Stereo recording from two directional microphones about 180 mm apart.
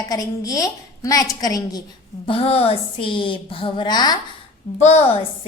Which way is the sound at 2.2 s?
30° left (ahead or behind).